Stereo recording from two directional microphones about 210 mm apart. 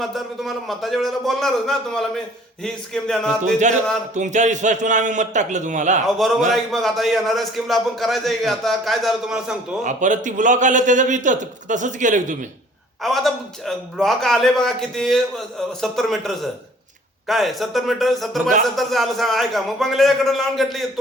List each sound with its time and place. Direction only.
0.0 s a man's voice: centre (ahead or behind)
3.4 s a man's voice: 35° right (ahead or behind)
6.2 s a man's voice: centre (ahead or behind)
9.8 s a man's voice: 35° right (ahead or behind)
13.0 s a man's voice: centre (ahead or behind)